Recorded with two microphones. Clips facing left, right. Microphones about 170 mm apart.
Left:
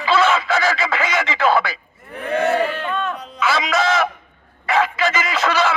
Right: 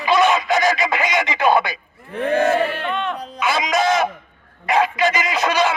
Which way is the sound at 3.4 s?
15° right (ahead or behind).